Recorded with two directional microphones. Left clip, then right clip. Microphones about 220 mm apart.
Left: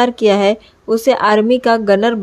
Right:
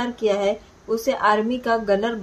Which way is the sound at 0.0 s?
40° left (ahead or behind).